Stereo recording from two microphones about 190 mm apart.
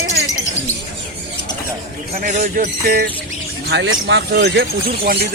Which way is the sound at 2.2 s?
45° right (ahead or behind).